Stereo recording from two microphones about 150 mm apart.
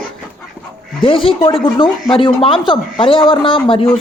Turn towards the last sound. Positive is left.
turn(degrees=35)  # may be behind; listen again after turning